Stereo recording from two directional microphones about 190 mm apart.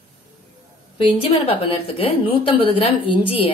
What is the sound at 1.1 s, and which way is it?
A woman's voice, 30° left (ahead or behind).